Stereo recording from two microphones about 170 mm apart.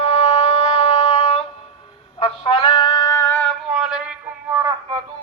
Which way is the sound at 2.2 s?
35° left (ahead or behind).